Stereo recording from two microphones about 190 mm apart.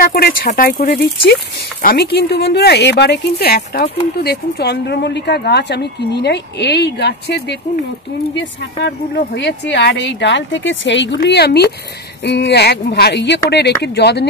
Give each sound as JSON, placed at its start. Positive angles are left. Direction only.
{"t": 0.0, "sound": "speech", "side_deg": 50}
{"t": 11.2, "sound": "speech", "side_deg": 60}